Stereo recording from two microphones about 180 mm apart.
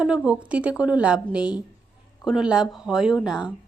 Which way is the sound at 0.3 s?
5° right (ahead or behind).